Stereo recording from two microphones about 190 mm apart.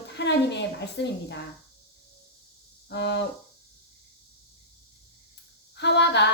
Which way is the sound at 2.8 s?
65° left (ahead or behind).